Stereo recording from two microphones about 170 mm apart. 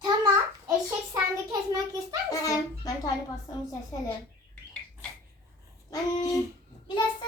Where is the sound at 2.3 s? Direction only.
20° left (ahead or behind).